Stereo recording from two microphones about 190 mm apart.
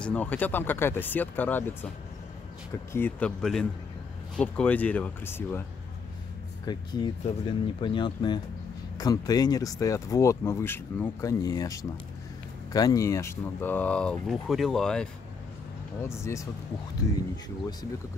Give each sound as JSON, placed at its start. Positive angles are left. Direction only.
{"t": 0.0, "sound": "speech", "side_deg": 5}
{"t": 2.9, "sound": "speech", "side_deg": 10}
{"t": 6.6, "sound": "speech", "side_deg": 20}
{"t": 16.0, "sound": "speech", "side_deg": 15}